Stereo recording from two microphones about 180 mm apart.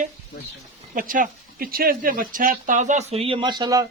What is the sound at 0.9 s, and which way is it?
Speech, 50° right (ahead or behind).